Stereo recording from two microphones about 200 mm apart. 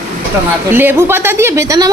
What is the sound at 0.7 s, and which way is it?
A woman's voice, 10° right (ahead or behind).